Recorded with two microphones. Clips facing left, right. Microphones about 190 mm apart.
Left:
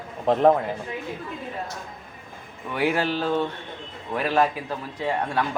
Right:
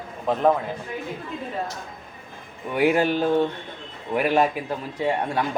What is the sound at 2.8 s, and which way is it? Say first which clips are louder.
Speech: right 4 dB; 15° right (ahead or behind).